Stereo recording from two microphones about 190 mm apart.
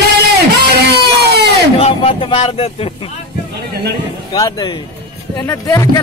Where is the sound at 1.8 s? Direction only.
30° left (ahead or behind).